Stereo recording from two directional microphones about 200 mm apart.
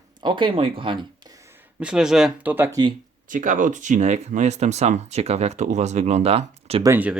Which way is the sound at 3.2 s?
40° right (ahead or behind).